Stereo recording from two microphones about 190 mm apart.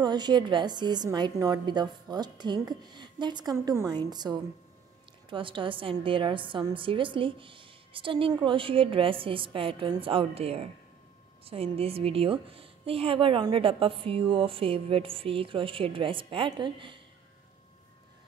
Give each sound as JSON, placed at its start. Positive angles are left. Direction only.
{"t": 0.0, "sound": "a woman's voice", "side_deg": -20}